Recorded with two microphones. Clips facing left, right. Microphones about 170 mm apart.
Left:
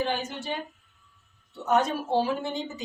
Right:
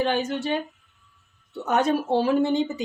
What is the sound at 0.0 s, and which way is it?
Speech, 70° right (ahead or behind).